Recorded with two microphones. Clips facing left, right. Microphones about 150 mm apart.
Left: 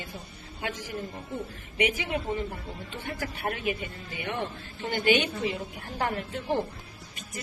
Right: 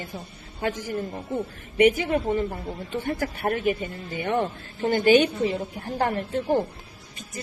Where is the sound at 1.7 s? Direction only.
50° right (ahead or behind); by 6.4 s 35° right (ahead or behind).